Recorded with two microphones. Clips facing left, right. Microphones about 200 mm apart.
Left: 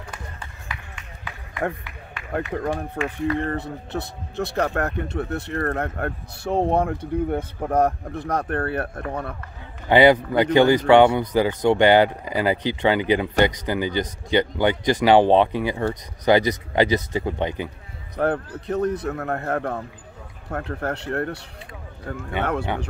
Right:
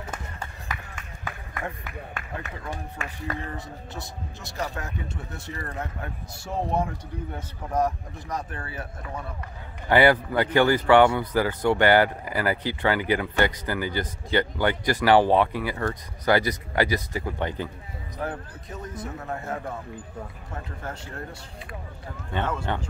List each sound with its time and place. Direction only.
0.1 s run: 45° right (ahead or behind)
2.6 s speech: 50° left (ahead or behind)
3.3 s speech: 60° left (ahead or behind)
9.8 s speech: 20° left (ahead or behind)
18.1 s a man's voice: 65° left (ahead or behind)
22.4 s speech: 65° left (ahead or behind)